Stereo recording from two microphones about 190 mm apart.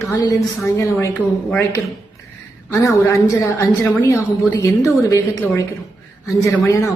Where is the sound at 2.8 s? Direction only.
15° left (ahead or behind).